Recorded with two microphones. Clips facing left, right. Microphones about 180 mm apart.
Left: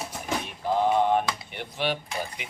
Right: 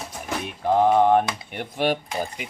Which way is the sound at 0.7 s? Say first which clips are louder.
Right 5 dB; 50° right (ahead or behind).